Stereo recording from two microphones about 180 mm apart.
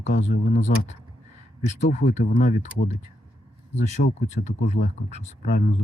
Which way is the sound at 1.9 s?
40° left (ahead or behind).